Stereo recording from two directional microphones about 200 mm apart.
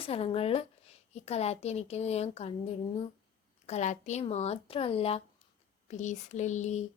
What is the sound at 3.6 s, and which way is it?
Speech, 35° left (ahead or behind).